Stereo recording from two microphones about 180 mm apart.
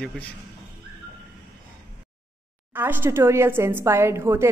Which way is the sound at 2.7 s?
10° right (ahead or behind).